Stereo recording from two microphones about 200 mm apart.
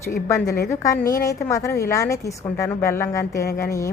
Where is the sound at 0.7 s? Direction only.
15° left (ahead or behind).